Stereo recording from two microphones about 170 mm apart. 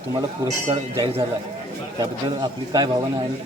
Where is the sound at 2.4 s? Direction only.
25° right (ahead or behind).